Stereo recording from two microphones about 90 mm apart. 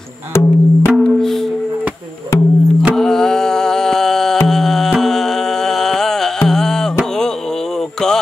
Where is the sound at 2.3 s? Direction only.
35° left (ahead or behind).